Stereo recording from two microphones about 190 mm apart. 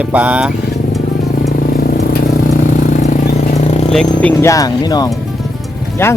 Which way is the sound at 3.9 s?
10° left (ahead or behind).